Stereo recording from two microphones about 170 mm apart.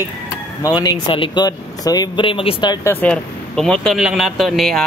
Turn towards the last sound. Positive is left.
turn(degrees=0)  # may be behind; listen again after turning